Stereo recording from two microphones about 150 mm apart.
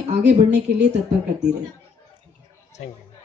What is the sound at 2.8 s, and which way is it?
Speech, 50° left (ahead or behind).